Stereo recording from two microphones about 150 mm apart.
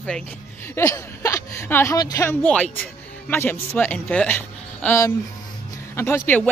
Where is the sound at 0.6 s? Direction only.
20° left (ahead or behind).